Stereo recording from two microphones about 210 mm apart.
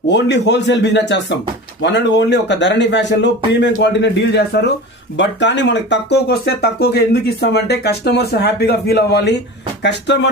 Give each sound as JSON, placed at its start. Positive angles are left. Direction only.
{"t": 0.1, "sound": "speech", "side_deg": 55}